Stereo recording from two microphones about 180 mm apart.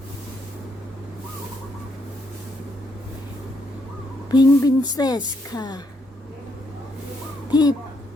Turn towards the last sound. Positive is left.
turn(degrees=20)  # may be behind; listen again after turning